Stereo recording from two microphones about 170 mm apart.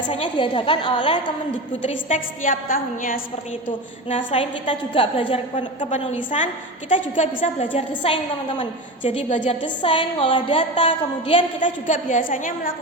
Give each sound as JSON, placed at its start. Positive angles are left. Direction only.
{"t": 0.1, "sound": "a woman's voice", "side_deg": 30}
{"t": 1.8, "sound": "a woman's voice", "side_deg": 45}
{"t": 4.1, "sound": "a woman's voice", "side_deg": 35}
{"t": 9.3, "sound": "a woman's voice", "side_deg": 45}
{"t": 9.8, "sound": "a woman's voice", "side_deg": 30}
{"t": 11.6, "sound": "a woman's voice", "side_deg": 50}